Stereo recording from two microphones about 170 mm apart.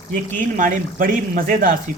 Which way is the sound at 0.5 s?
50° right (ahead or behind).